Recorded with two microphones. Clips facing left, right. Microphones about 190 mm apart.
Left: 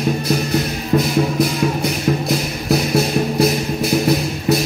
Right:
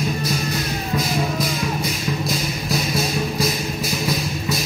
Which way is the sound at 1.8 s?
65° left (ahead or behind).